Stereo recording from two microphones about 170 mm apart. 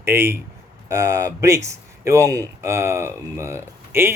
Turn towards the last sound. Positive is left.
turn(degrees=-15)  # may be behind; listen again after turning